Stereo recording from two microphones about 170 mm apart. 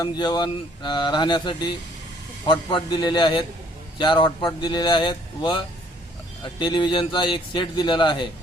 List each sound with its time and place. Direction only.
0.0 s a man's voice: 25° left (ahead or behind)